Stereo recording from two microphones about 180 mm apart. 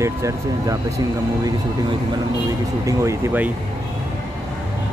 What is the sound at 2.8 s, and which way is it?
Speech, 15° right (ahead or behind).